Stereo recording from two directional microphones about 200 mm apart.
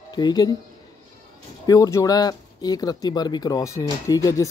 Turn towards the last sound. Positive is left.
turn(degrees=15)  # may be behind; listen again after turning